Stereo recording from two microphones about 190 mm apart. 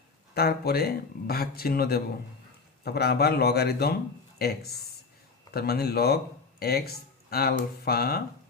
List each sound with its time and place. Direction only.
0.3 s speech: 55° left (ahead or behind)